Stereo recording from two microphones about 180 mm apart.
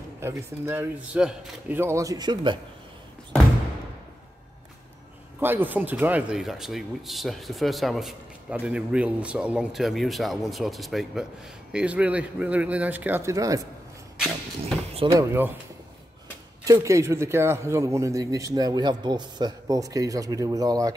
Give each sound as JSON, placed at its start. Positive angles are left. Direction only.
{"t": 0.2, "sound": "speech", "side_deg": -15}
{"t": 5.4, "sound": "speech", "side_deg": -10}
{"t": 14.1, "sound": "vehicle", "side_deg": 0}
{"t": 15.1, "sound": "speech", "side_deg": -10}
{"t": 16.6, "sound": "speech", "side_deg": -20}